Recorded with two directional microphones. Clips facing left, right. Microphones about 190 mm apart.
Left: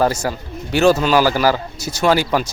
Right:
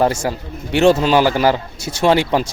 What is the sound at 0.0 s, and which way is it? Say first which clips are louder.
A man's voice: right 1 dB; 25° right (ahead or behind).